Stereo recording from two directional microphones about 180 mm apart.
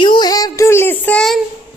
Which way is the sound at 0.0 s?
25° left (ahead or behind).